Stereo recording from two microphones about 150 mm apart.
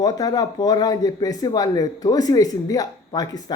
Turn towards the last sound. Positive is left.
turn(degrees=25)  # may be behind; listen again after turning